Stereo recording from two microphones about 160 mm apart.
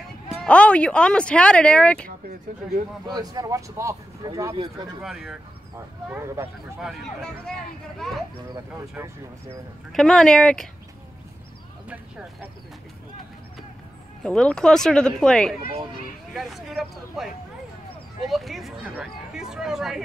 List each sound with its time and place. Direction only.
0.4 s speech: 5° left (ahead or behind)
3.1 s speech: 25° right (ahead or behind)
5.0 s speech: 5° right (ahead or behind)
6.0 s speech: 15° right (ahead or behind)
6.8 s speech: centre (ahead or behind)
8.9 s speech: 15° right (ahead or behind)
9.9 s speech: 5° left (ahead or behind)
11.9 s speech: 10° right (ahead or behind)
14.2 s speech: 5° left (ahead or behind)
18.3 s speech: centre (ahead or behind)